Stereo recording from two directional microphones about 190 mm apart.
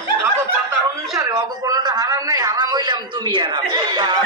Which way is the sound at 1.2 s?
20° right (ahead or behind).